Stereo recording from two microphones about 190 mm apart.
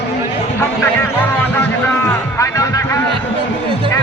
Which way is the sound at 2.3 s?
15° left (ahead or behind).